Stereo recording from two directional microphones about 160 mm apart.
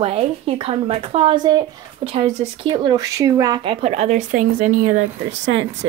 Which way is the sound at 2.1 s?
35° right (ahead or behind).